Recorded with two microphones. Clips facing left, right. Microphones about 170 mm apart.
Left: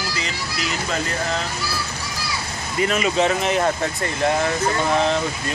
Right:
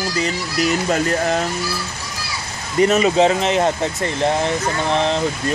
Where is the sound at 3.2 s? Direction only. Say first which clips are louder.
Right 4 dB; 25° right (ahead or behind).